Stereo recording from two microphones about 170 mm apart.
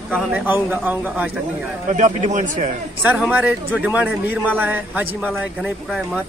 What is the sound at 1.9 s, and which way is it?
Speech, 45° right (ahead or behind).